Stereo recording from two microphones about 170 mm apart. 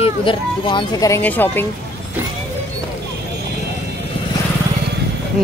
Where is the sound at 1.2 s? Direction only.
10° left (ahead or behind).